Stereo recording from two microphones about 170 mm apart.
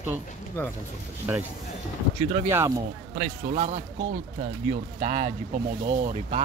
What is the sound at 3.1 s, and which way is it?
Speech, 50° right (ahead or behind).